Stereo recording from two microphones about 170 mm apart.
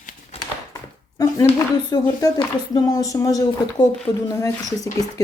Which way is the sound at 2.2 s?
20° left (ahead or behind).